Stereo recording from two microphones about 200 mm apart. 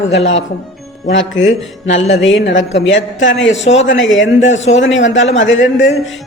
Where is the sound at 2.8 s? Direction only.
65° left (ahead or behind).